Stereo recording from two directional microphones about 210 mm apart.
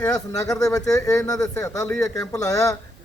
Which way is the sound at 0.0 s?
15° left (ahead or behind).